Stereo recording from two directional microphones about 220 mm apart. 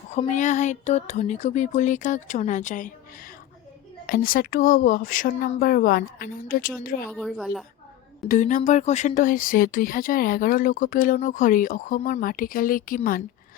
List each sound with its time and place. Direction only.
0.1 s speech: 30° left (ahead or behind)
4.0 s speech: 40° left (ahead or behind)
7.1 s a woman's voice: centre (ahead or behind)
8.3 s speech: 35° left (ahead or behind)